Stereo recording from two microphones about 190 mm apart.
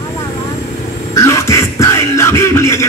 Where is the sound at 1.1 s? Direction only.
15° left (ahead or behind).